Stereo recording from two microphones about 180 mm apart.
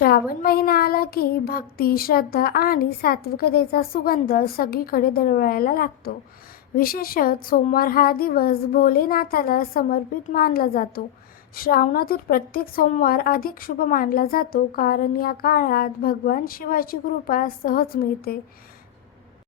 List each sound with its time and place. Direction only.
0.0 s a woman's voice: 55° left (ahead or behind)